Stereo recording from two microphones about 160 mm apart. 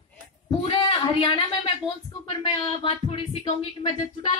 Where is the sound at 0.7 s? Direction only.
35° left (ahead or behind).